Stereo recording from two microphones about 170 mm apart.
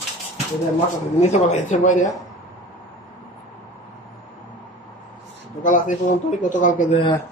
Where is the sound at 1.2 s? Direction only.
40° left (ahead or behind).